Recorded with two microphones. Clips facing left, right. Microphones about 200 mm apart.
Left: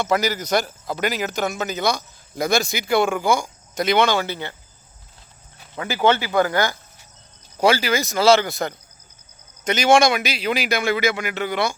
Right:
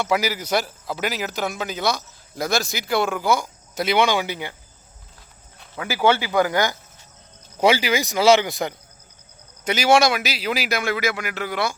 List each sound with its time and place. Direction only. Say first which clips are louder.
0.0 s a man's voice: left 1 dB; 5° right (ahead or behind)
5.8 s a man's voice: left 1 dB; 10° right (ahead or behind)